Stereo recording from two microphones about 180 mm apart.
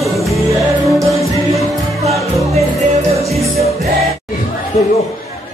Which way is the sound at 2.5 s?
35° right (ahead or behind).